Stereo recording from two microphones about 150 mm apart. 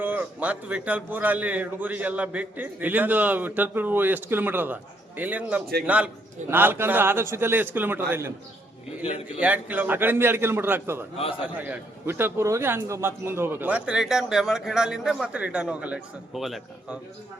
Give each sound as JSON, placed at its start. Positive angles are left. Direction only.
{"t": 0.0, "sound": "a man's voice", "side_deg": -10}
{"t": 9.4, "sound": "a man's voice", "side_deg": -10}
{"t": 11.2, "sound": "a man's voice", "side_deg": 35}
{"t": 11.4, "sound": "a man's voice", "side_deg": -10}